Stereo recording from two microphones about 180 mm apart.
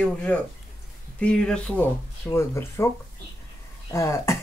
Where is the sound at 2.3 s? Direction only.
15° left (ahead or behind).